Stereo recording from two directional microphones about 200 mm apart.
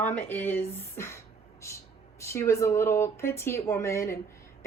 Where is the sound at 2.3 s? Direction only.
15° left (ahead or behind).